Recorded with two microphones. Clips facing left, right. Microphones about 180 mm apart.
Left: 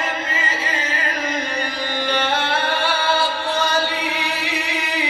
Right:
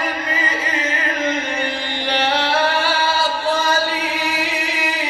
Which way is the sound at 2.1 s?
50° left (ahead or behind).